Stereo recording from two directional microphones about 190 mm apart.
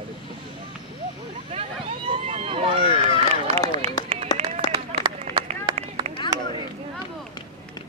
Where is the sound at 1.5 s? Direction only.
30° right (ahead or behind).